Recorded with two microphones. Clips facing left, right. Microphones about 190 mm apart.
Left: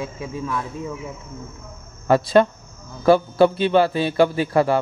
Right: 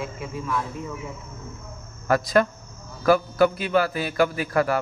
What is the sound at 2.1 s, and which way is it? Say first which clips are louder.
A man's voice: left 5 dB; 30° left (ahead or behind).